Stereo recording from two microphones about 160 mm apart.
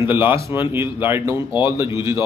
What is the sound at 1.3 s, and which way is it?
Speech, 30° left (ahead or behind).